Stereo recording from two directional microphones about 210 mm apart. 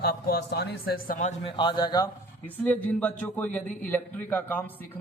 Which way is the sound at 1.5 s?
20° left (ahead or behind).